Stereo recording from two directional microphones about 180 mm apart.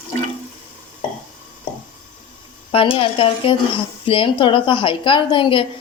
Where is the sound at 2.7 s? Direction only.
30° left (ahead or behind).